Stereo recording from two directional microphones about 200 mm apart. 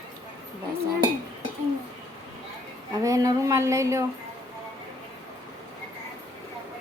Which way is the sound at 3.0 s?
15° right (ahead or behind).